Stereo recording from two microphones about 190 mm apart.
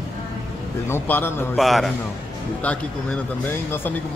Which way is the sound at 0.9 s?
10° left (ahead or behind).